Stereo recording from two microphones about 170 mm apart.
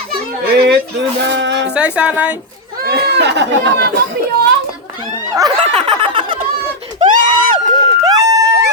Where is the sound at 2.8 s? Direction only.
70° right (ahead or behind); by 3.9 s 90° right.